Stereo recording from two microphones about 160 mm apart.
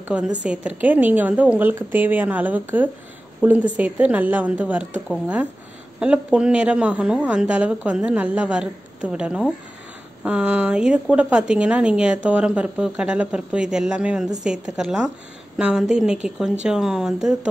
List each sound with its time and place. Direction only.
0.4 s a woman's voice: 5° right (ahead or behind)